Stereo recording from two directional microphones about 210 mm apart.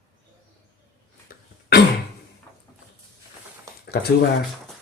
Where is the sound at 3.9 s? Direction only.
50° left (ahead or behind).